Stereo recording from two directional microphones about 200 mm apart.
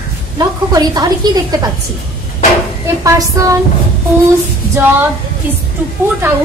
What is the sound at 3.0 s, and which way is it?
Speech, 15° right (ahead or behind).